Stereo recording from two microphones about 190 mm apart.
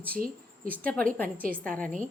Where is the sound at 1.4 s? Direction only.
50° right (ahead or behind).